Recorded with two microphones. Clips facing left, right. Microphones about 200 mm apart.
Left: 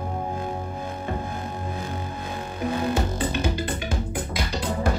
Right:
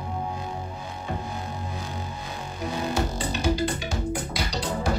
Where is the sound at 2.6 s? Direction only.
55° left (ahead or behind).